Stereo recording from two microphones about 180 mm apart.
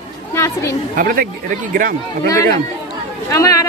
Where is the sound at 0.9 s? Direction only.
50° right (ahead or behind).